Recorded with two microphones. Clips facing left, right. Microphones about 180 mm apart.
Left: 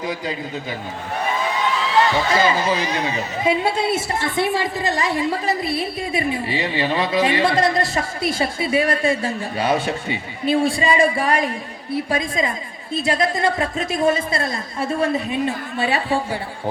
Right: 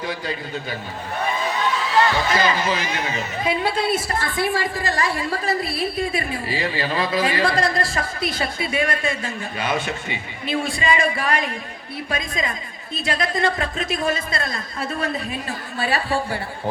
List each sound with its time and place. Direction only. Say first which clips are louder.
0.0 s speech: left 2 dB; 20° left (ahead or behind)
2.3 s speech: left 2 dB; 25° left (ahead or behind)